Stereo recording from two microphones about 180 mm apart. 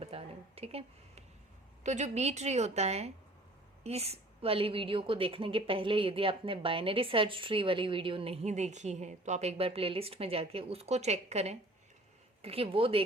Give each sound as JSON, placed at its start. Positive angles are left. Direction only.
{"t": 0.0, "sound": "a woman's voice", "side_deg": -35}